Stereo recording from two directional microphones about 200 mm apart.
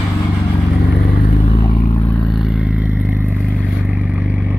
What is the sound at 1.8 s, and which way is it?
Vehicle, 15° left (ahead or behind).